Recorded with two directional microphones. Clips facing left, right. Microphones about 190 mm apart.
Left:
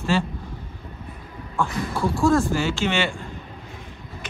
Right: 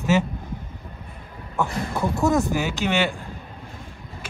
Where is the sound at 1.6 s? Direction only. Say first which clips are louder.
Even; 20° right (ahead or behind).